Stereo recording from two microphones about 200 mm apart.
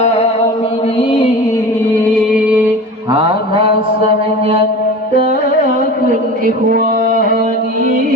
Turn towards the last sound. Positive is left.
turn(degrees=-45)  # may be behind; listen again after turning